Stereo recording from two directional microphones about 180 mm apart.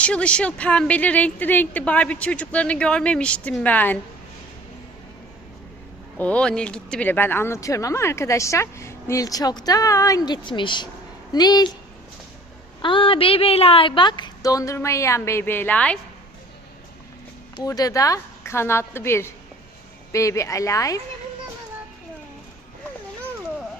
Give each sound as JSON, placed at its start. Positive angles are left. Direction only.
{"t": 0.0, "sound": "speech", "side_deg": 5}
{"t": 6.1, "sound": "a woman's voice", "side_deg": 5}
{"t": 12.8, "sound": "a woman's voice", "side_deg": 30}
{"t": 17.6, "sound": "speech", "side_deg": 20}